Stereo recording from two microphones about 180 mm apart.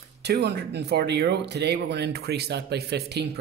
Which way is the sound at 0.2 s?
70° right (ahead or behind).